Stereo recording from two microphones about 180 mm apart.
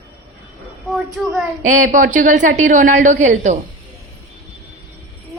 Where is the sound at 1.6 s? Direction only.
45° right (ahead or behind).